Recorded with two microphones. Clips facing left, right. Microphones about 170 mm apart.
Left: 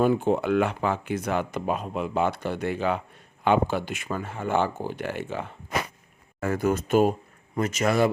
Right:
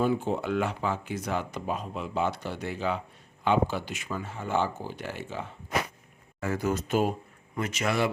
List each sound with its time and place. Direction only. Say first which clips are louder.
0.0 s speech: left 5 dB; 60° left (ahead or behind); by 8.1 s 45° left (ahead or behind)